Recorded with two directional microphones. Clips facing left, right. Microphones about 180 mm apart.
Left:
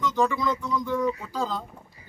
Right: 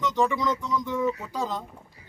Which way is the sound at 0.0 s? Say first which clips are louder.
Even; 20° right (ahead or behind).